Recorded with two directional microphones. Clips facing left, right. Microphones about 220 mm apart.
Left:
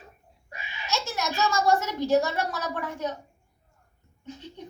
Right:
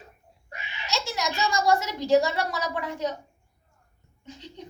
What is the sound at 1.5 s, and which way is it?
A woman's voice, 10° right (ahead or behind).